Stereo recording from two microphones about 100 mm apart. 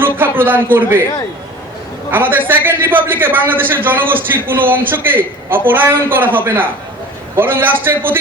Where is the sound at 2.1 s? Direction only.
20° right (ahead or behind).